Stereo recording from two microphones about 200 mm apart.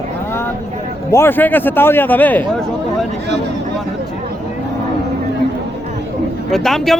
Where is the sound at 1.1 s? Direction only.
10° left (ahead or behind).